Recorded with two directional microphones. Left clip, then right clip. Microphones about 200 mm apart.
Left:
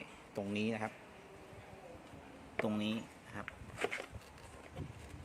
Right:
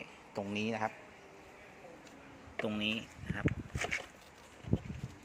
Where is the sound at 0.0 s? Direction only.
Centre (ahead or behind).